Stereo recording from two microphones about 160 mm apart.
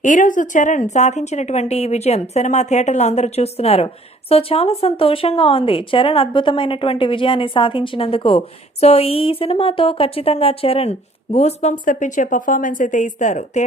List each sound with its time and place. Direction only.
0.0 s a woman's voice: 55° left (ahead or behind)